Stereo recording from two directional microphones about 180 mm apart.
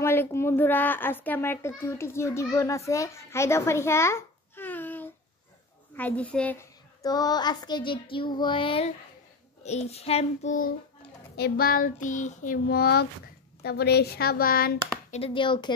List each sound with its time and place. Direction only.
0.0 s a child's voice: 15° left (ahead or behind); by 8.9 s 30° left (ahead or behind)
9.6 s child singing: 35° left (ahead or behind)
11.3 s child singing: 60° left (ahead or behind)
13.6 s speech: 60° left (ahead or behind)
15.0 s a child's voice: 35° left (ahead or behind)